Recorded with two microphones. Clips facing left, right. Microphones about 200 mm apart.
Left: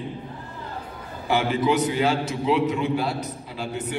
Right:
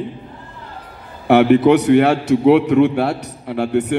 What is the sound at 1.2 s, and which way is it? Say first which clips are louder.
A man's voice: right 11 dB; 65° right (ahead or behind).